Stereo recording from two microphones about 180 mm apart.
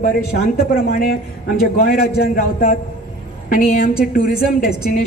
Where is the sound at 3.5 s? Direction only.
50° left (ahead or behind).